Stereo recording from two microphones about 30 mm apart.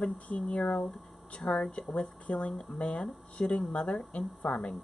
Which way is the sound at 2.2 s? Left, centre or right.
Left.